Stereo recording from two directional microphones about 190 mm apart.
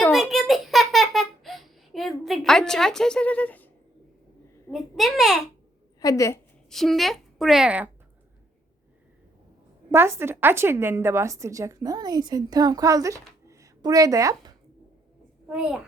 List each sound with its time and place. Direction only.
0.0 s a sound: centre (ahead or behind)
4.7 s a child's voice: centre (ahead or behind)
6.0 s a woman's voice: 15° left (ahead or behind)
6.7 s a woman's voice: centre (ahead or behind)
9.9 s a woman's voice: 10° right (ahead or behind)
15.4 s a child's voice: 5° right (ahead or behind)